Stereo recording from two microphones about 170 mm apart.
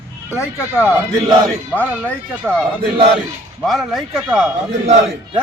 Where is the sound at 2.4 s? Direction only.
Centre (ahead or behind).